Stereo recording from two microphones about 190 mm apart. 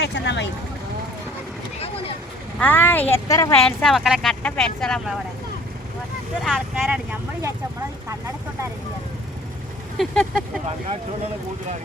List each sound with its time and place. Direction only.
0.0 s speech: 65° left (ahead or behind)
2.6 s speech: 10° left (ahead or behind)
3.7 s speech: 5° left (ahead or behind)
6.4 s speech: 5° right (ahead or behind)
10.0 s speech: centre (ahead or behind)